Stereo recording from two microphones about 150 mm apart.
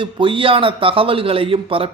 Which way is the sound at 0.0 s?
35° right (ahead or behind).